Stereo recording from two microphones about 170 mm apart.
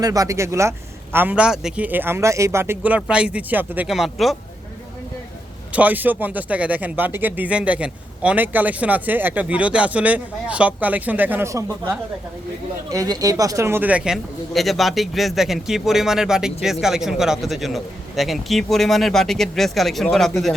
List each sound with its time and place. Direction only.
0.0 s speech: 20° right (ahead or behind); by 4.4 s centre (ahead or behind)
5.7 s speech: 10° right (ahead or behind)